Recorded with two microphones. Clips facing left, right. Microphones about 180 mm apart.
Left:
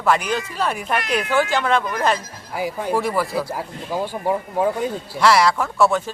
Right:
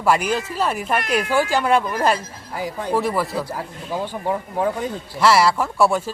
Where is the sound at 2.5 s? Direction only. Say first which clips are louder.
Left 1 dB; 10° left (ahead or behind).